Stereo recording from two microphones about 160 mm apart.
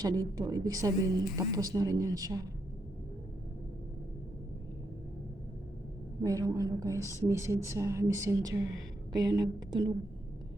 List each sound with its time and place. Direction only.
0.3 s speech: 25° right (ahead or behind)
6.2 s speech: 20° right (ahead or behind)